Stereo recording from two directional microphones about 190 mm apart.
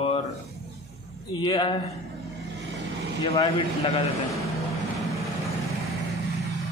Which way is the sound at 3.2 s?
25° left (ahead or behind).